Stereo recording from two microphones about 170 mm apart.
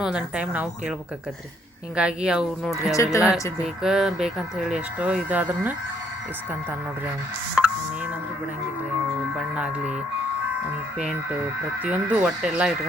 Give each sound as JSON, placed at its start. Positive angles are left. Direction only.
{"t": 0.0, "sound": "speech", "side_deg": -5}
{"t": 2.0, "sound": "speech", "side_deg": -5}
{"t": 2.9, "sound": "speech", "side_deg": 20}
{"t": 3.8, "sound": "speech", "side_deg": -5}
{"t": 9.6, "sound": "speech", "side_deg": -5}
{"t": 11.8, "sound": "speech", "side_deg": -10}